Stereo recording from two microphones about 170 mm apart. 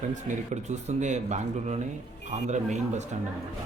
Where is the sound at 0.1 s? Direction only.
45° right (ahead or behind).